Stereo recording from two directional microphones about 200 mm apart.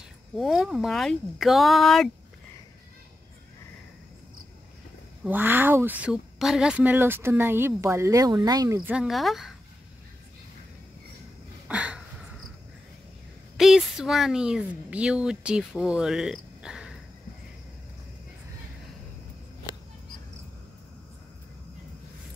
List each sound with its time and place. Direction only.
0.4 s speech: centre (ahead or behind)
5.2 s speech: 10° right (ahead or behind)
8.9 s speech: centre (ahead or behind)
11.6 s a sound: 5° right (ahead or behind)
13.6 s speech: centre (ahead or behind)